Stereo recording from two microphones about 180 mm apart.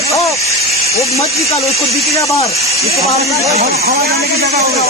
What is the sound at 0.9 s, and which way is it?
Speech, 35° left (ahead or behind).